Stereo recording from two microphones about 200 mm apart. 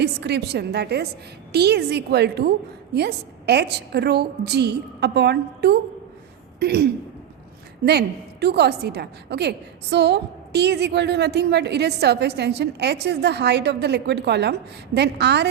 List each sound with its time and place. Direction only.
0.0 s a woman's voice: 55° right (ahead or behind)
6.6 s a sound: 55° right (ahead or behind)
7.9 s a woman's voice: 55° right (ahead or behind)